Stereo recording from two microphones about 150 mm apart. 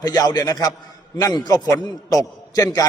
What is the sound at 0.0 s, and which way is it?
A man's voice, 25° left (ahead or behind).